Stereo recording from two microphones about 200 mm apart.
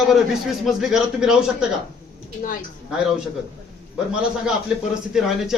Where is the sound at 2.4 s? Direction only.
45° left (ahead or behind).